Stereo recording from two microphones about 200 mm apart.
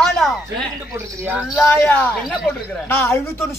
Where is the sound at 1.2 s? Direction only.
10° right (ahead or behind).